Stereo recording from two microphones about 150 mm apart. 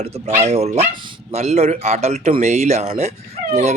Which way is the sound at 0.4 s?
45° right (ahead or behind).